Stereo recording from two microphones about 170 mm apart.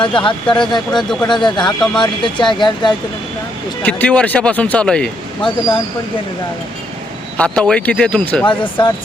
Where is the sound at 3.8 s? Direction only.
10° left (ahead or behind).